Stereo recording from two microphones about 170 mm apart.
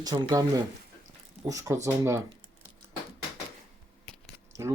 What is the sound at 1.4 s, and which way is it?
Speech, 20° right (ahead or behind).